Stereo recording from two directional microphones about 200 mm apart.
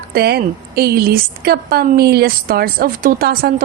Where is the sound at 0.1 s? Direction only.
50° right (ahead or behind).